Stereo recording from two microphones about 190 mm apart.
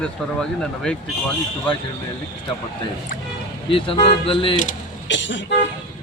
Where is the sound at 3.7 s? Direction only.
25° left (ahead or behind).